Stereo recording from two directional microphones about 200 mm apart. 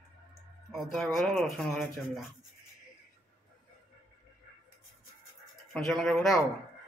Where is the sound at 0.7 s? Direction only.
Centre (ahead or behind).